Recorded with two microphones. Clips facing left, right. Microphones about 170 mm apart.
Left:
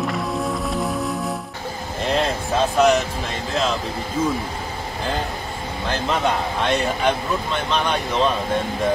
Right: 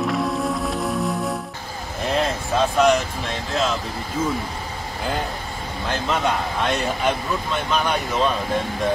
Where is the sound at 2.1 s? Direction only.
Centre (ahead or behind).